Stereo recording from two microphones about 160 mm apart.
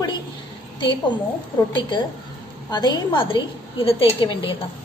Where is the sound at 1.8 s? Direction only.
30° left (ahead or behind).